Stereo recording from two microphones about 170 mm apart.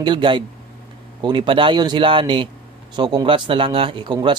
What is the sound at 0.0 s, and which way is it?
Speech, 25° right (ahead or behind).